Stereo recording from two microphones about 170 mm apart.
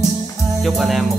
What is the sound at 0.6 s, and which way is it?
Speech, centre (ahead or behind).